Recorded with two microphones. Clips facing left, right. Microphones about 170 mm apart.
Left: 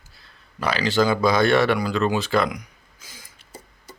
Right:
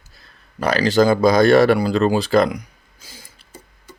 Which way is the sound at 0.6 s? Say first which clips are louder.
Right 5 dB; 40° right (ahead or behind).